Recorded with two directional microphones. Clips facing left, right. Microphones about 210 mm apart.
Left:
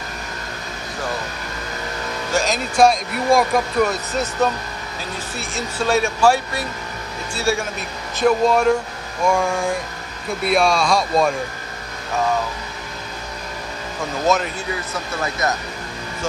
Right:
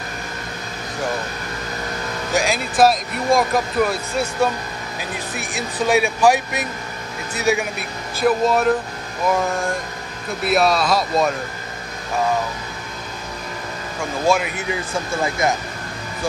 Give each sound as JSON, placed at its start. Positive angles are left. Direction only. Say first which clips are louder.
{"t": 2.3, "sound": "speech", "louder": "even", "side_deg": -10}
{"t": 4.1, "sound": "speech", "louder": "even", "side_deg": -10}
{"t": 8.2, "sound": "speech", "louder": "left 1 dB", "side_deg": -5}
{"t": 14.2, "sound": "speech", "louder": "right 1 dB", "side_deg": -10}